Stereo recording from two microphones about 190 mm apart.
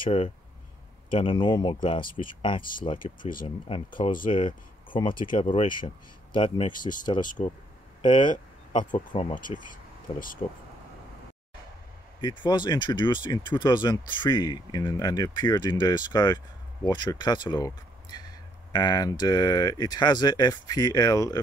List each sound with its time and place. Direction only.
0.0 s speech: 30° left (ahead or behind)
3.0 s speech: 45° left (ahead or behind)
3.4 s speech: 30° left (ahead or behind)
7.2 s speech: 40° left (ahead or behind)
8.0 s speech: 25° left (ahead or behind)
12.2 s speech: 25° left (ahead or behind)